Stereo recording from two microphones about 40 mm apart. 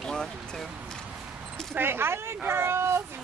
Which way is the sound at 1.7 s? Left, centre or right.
Right.